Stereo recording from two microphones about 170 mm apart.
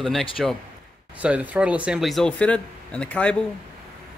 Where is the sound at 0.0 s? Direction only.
Centre (ahead or behind).